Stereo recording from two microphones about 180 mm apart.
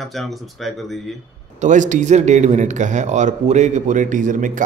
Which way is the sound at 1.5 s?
45° right (ahead or behind).